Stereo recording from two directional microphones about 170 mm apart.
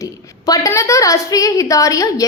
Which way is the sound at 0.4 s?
20° left (ahead or behind).